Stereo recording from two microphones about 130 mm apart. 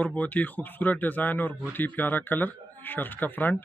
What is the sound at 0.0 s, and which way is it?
Speech, 10° left (ahead or behind).